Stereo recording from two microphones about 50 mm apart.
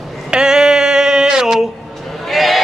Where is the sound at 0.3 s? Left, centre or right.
Centre.